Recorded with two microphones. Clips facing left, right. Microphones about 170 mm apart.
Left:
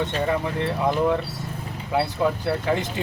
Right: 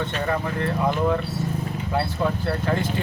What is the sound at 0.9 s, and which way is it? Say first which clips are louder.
Speech: left 2 dB; 15° left (ahead or behind).